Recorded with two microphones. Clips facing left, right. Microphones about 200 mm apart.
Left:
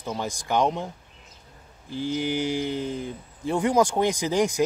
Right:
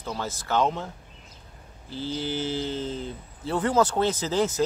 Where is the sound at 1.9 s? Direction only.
15° left (ahead or behind).